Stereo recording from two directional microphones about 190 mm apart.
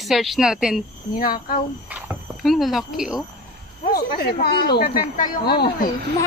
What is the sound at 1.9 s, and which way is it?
Speech, 5° right (ahead or behind).